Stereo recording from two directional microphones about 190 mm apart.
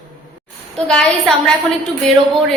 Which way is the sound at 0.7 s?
5° left (ahead or behind).